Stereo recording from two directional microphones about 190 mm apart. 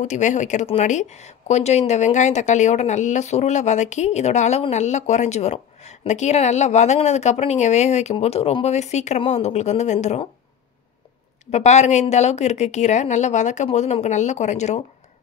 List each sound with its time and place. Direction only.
0.0 s speech: 40° left (ahead or behind)
11.5 s speech: 35° left (ahead or behind)